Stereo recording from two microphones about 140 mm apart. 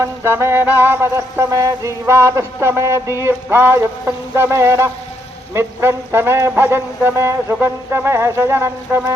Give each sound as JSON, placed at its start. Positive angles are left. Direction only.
{"t": 0.0, "sound": "music", "side_deg": -20}
{"t": 0.8, "sound": "a sound", "side_deg": -15}
{"t": 5.5, "sound": "music", "side_deg": -20}